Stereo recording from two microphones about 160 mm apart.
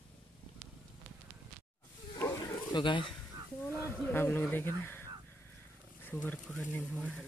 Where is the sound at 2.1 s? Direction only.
20° left (ahead or behind).